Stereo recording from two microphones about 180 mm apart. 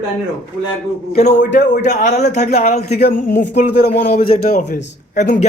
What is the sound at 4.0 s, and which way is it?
Speech, 40° left (ahead or behind).